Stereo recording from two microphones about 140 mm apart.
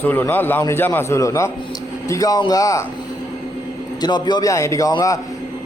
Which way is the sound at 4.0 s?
30° left (ahead or behind).